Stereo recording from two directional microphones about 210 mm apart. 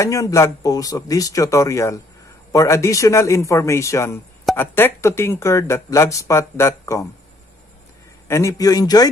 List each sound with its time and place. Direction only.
0.0 s speech: 15° left (ahead or behind)
8.3 s speech: 15° left (ahead or behind)